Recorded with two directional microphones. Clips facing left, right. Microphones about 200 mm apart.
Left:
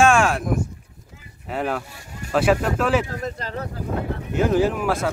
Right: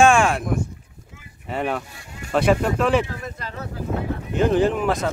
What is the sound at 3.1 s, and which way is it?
Speech, 40° left (ahead or behind).